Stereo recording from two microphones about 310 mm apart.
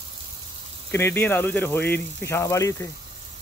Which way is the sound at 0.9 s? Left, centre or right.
Centre.